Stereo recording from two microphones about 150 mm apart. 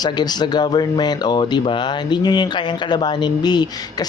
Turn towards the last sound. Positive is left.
turn(degrees=25)  # may be behind; listen again after turning